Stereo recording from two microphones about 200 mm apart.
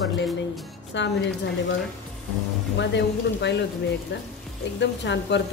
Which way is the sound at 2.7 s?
60° left (ahead or behind).